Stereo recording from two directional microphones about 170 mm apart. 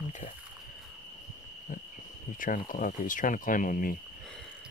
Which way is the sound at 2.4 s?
55° left (ahead or behind).